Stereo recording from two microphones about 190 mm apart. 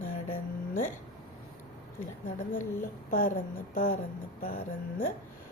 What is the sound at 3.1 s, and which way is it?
A woman's voice, 50° left (ahead or behind).